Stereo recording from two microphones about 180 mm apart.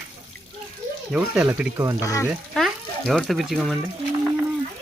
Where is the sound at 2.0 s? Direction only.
20° left (ahead or behind).